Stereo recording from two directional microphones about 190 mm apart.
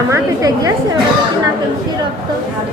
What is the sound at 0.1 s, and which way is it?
Speech, 20° right (ahead or behind).